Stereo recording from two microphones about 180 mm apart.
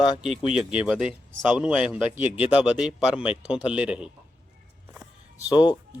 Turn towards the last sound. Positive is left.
turn(degrees=-10)  # may be behind; listen again after turning